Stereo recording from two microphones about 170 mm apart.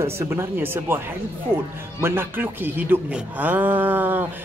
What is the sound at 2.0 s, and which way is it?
Speech, 15° right (ahead or behind).